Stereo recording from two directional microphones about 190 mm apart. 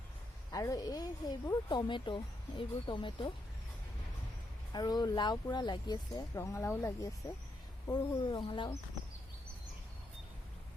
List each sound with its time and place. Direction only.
0.5 s speech: 20° left (ahead or behind)
4.7 s speech: 20° left (ahead or behind)